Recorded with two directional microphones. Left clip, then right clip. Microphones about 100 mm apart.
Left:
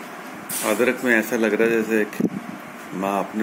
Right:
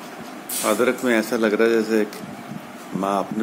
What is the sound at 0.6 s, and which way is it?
Speech, 5° right (ahead or behind).